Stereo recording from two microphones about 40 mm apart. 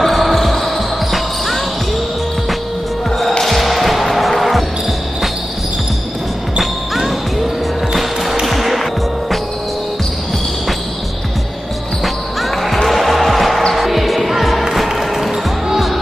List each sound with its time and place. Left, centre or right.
0.0 s basketball bounce: centre
3.3 s music: centre
6.6 s basketball bounce: centre
7.9 s music: centre
12.0 s basketball bounce: centre
12.8 s music: centre